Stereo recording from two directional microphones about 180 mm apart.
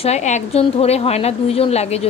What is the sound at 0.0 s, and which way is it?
A woman's voice, 40° left (ahead or behind).